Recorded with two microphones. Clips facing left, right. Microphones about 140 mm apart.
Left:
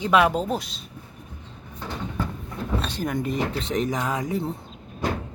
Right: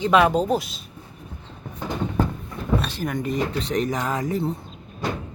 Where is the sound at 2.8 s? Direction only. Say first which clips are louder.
Even; centre (ahead or behind).